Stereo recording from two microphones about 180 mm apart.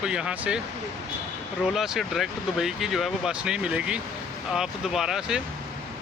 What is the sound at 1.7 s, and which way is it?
Speech, centre (ahead or behind).